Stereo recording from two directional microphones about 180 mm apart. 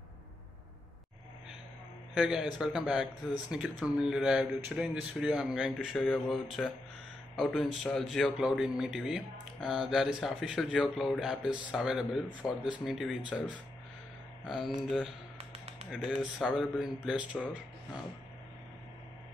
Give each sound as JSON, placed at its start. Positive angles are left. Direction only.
{"t": 2.1, "sound": "a man's voice", "side_deg": -5}
{"t": 15.3, "sound": "a sound", "side_deg": -35}
{"t": 15.9, "sound": "a man's voice", "side_deg": 0}